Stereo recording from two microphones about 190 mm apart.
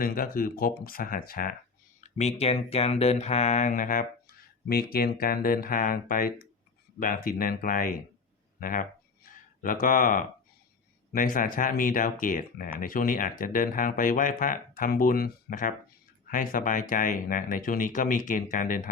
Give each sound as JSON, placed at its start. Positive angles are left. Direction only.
{"t": 0.0, "sound": "speech", "side_deg": 50}
{"t": 2.0, "sound": "speech", "side_deg": 40}